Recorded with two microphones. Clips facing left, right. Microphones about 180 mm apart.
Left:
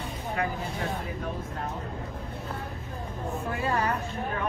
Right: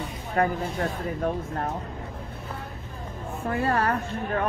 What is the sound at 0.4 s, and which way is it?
Speech, 50° right (ahead or behind).